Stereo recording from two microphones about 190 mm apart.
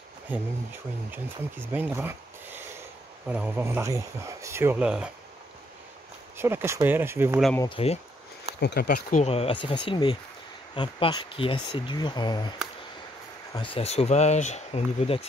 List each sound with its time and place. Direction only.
0.3 s speech: 10° right (ahead or behind)
1.7 s speech: 10° right (ahead or behind)
6.3 s speech: 15° right (ahead or behind)
7.7 s speech: 30° left (ahead or behind)
8.5 s speech: 60° left (ahead or behind)
9.2 s speech: 30° left (ahead or behind)